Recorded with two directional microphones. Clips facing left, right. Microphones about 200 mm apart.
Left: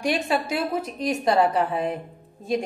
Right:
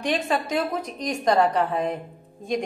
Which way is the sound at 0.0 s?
10° left (ahead or behind).